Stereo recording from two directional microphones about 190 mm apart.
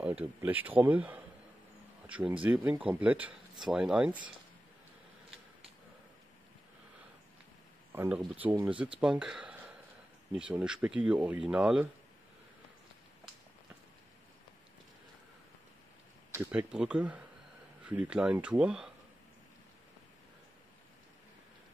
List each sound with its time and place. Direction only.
0.2 s speech: 10° right (ahead or behind)
7.9 s speech: 10° right (ahead or behind)
16.3 s speech: 5° right (ahead or behind)